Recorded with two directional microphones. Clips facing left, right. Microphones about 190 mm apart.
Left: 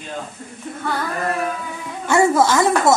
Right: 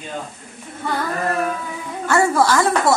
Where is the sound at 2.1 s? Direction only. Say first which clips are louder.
Left 1 dB; 20° left (ahead or behind).